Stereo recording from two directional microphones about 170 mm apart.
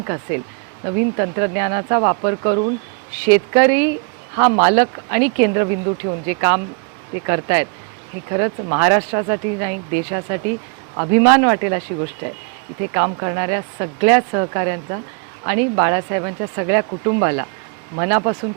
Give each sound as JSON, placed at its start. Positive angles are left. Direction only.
{"t": 0.0, "sound": "speech", "side_deg": -15}